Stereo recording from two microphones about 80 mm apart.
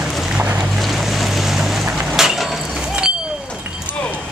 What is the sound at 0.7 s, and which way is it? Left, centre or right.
Boat, centre.